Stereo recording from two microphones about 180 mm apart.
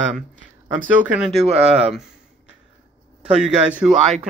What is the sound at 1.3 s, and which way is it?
Speech, 35° right (ahead or behind).